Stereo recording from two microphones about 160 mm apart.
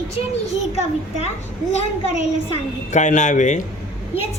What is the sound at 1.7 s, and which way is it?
A woman's voice, 40° left (ahead or behind).